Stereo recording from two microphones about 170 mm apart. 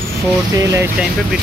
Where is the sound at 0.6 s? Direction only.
20° right (ahead or behind).